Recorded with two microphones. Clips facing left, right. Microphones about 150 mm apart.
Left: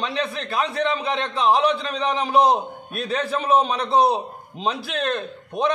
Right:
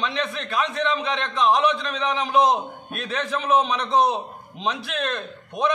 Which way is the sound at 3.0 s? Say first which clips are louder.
Left 2 dB; 35° left (ahead or behind).